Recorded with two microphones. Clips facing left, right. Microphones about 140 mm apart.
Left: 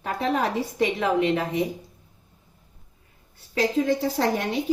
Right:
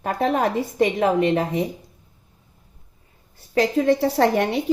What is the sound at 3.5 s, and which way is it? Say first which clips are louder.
A woman's voice: right 4 dB; 65° right (ahead or behind).